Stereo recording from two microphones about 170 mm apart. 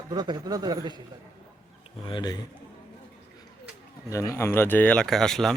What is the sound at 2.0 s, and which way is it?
Speech, 25° left (ahead or behind).